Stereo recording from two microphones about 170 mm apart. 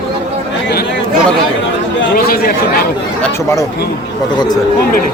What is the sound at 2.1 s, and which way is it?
Speech, 60° left (ahead or behind).